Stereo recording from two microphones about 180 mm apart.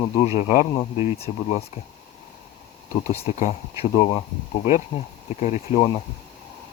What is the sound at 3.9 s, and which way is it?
Speech, 30° left (ahead or behind).